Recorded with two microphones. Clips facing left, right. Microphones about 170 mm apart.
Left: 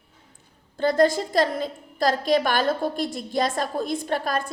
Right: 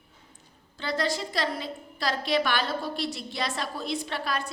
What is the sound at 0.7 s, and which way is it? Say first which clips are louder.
A woman's voice: left 10 dB; 50° left (ahead or behind).